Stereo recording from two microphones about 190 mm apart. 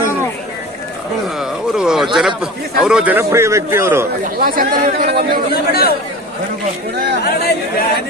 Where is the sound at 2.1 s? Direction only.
Centre (ahead or behind).